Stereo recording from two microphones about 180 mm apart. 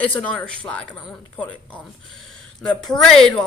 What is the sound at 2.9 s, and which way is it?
Speech, centre (ahead or behind).